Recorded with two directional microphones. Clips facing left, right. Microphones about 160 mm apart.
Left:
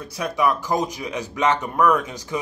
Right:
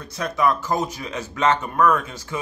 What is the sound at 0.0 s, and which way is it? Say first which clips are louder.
A man's voice: even; 10° left (ahead or behind).